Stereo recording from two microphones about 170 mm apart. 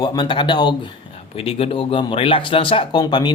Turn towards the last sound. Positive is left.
turn(degrees=25)  # may be behind; listen again after turning